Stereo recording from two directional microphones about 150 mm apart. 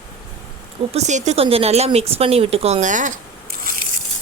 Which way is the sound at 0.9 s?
50° right (ahead or behind).